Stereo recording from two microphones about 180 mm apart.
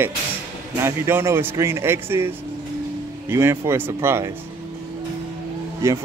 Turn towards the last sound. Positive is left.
turn(degrees=-15)  # may be behind; listen again after turning